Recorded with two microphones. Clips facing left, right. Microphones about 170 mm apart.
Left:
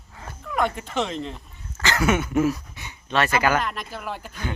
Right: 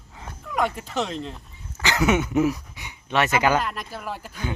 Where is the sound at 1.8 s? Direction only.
15° right (ahead or behind).